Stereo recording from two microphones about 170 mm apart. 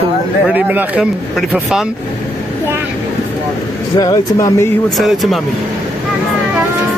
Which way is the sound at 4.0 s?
20° left (ahead or behind).